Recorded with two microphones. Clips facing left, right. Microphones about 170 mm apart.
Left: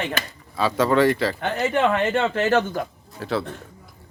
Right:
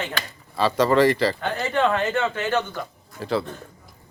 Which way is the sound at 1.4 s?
25° left (ahead or behind).